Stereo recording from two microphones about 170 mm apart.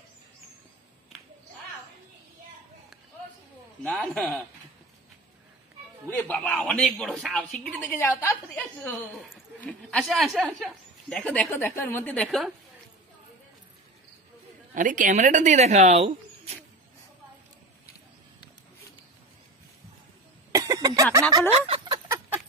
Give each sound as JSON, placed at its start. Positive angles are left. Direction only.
{"t": 3.8, "sound": "speech", "side_deg": 0}
{"t": 6.0, "sound": "a woman's voice", "side_deg": 10}
{"t": 9.1, "sound": "speech", "side_deg": 0}
{"t": 11.1, "sound": "a woman's voice", "side_deg": 5}
{"t": 14.7, "sound": "speech", "side_deg": -50}
{"t": 20.5, "sound": "a sound", "side_deg": -20}
{"t": 21.5, "sound": "fowl", "side_deg": -35}
{"t": 22.0, "sound": "chicken", "side_deg": -15}